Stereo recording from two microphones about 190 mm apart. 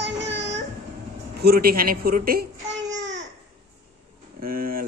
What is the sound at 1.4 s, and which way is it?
A woman's voice, 55° right (ahead or behind).